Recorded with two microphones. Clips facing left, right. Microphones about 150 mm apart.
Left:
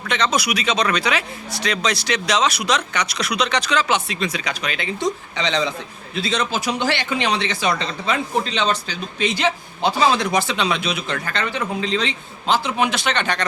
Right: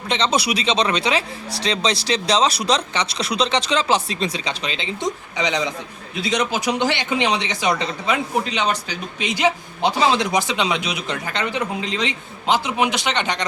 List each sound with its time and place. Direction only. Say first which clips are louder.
0.1 s speech: right 1 dB; 30° right (ahead or behind)